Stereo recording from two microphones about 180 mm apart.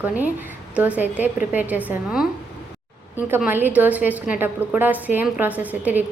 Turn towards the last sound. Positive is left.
turn(degrees=-10)  # may be behind; listen again after turning